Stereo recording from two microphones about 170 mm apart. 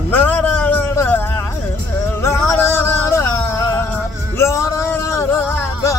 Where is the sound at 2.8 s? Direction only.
20° left (ahead or behind).